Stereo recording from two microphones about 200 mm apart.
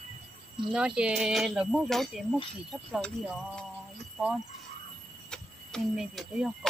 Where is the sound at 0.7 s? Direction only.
5° right (ahead or behind).